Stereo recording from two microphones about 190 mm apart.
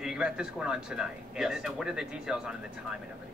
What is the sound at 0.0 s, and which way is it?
Speech, 5° right (ahead or behind).